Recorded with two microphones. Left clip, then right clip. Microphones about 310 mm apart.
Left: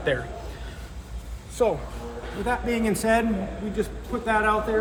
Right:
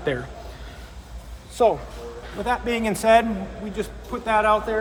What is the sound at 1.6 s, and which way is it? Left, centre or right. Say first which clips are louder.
Speech: right 4 dB; right.